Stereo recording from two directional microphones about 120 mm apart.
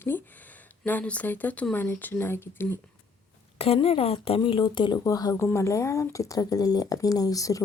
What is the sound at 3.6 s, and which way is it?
Speech, 55° left (ahead or behind).